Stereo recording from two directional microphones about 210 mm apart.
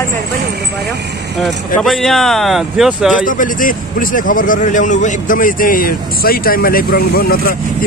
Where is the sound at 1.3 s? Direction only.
Centre (ahead or behind).